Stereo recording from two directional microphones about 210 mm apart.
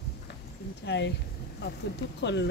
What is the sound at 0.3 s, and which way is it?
Clip-clop, 55° left (ahead or behind).